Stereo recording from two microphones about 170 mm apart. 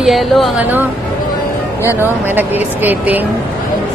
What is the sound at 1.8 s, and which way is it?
Speech, 10° right (ahead or behind).